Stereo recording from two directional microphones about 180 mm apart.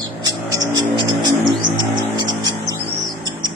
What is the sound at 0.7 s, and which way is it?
Vehicle, 25° right (ahead or behind).